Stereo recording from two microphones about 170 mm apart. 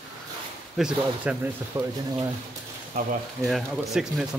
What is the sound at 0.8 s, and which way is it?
Speech, 5° right (ahead or behind).